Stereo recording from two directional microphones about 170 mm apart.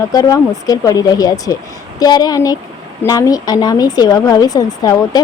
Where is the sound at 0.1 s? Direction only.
20° left (ahead or behind).